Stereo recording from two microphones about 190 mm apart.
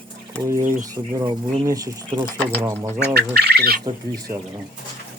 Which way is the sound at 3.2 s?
60° right (ahead or behind).